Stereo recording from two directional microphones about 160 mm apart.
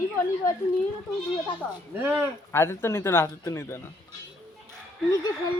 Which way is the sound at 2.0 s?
15° right (ahead or behind).